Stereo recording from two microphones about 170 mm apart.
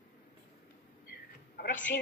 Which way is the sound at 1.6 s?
65° left (ahead or behind).